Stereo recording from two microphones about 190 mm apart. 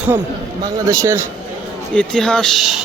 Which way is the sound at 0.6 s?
20° right (ahead or behind).